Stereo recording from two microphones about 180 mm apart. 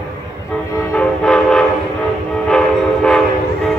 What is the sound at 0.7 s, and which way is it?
Train, 15° left (ahead or behind).